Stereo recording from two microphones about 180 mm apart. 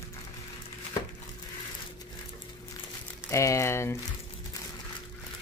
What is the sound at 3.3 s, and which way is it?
Speech, 15° left (ahead or behind).